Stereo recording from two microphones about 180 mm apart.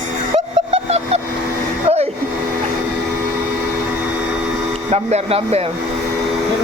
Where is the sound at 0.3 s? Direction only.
35° right (ahead or behind).